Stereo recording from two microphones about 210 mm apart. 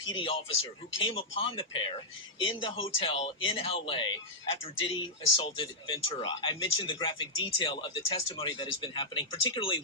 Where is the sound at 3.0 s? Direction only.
25° left (ahead or behind).